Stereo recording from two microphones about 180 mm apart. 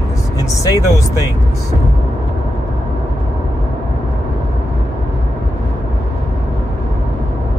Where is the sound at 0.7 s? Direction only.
20° left (ahead or behind).